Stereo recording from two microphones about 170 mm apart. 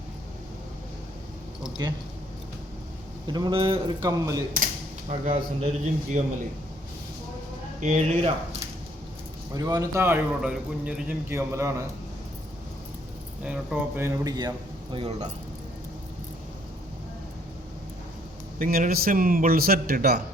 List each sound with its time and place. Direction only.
3.2 s speech: 25° right (ahead or behind)
4.5 s speech: 45° right (ahead or behind)
7.8 s speech: 40° right (ahead or behind)
9.6 s a man's voice: 20° right (ahead or behind); by 11.0 s 5° right (ahead or behind)
11.3 s a man's voice: 15° right (ahead or behind)
13.4 s a man's voice: 10° right (ahead or behind); by 14.5 s 25° right (ahead or behind)
14.9 s speech: 35° right (ahead or behind)
18.6 s a man's voice: 55° right (ahead or behind)